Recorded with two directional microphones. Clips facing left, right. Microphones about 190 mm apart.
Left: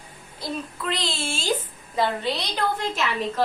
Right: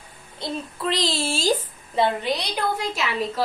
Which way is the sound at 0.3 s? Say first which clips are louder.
Right 1 dB; 30° right (ahead or behind).